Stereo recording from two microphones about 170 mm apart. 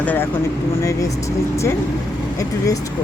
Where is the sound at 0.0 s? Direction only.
10° left (ahead or behind).